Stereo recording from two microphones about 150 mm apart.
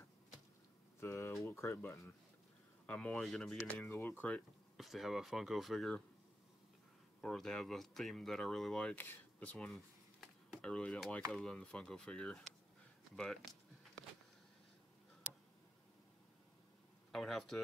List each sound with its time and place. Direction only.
1.0 s speech: 15° left (ahead or behind)
2.9 s speech: 5° left (ahead or behind)
4.7 s speech: centre (ahead or behind)
7.2 s speech: centre (ahead or behind)
13.1 s a sound: centre (ahead or behind)
17.1 s speech: centre (ahead or behind)